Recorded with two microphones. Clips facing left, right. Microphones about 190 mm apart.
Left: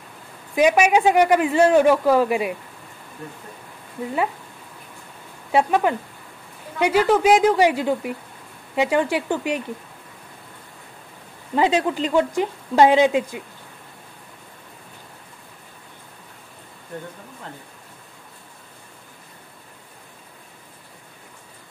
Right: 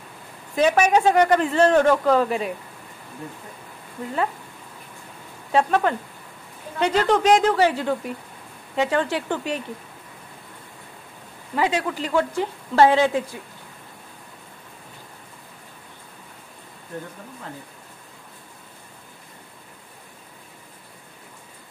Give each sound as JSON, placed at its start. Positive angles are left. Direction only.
{"t": 0.6, "sound": "a man's voice", "side_deg": 10}
{"t": 4.0, "sound": "a man's voice", "side_deg": 10}
{"t": 5.5, "sound": "a man's voice", "side_deg": 10}
{"t": 11.5, "sound": "a man's voice", "side_deg": 25}